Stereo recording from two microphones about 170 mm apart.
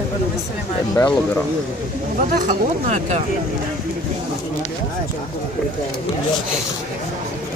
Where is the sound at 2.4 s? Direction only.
45° right (ahead or behind).